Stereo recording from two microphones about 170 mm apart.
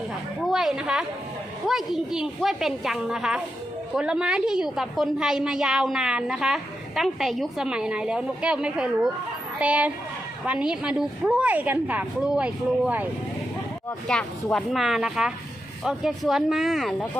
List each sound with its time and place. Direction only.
0.4 s a woman's voice: centre (ahead or behind)
14.1 s a woman's voice: 5° left (ahead or behind)